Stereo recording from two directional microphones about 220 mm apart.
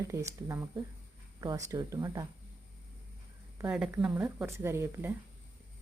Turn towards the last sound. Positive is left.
turn(degrees=-10)  # may be behind; listen again after turning